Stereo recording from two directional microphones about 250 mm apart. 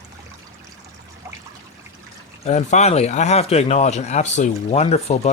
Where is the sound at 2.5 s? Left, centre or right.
Left.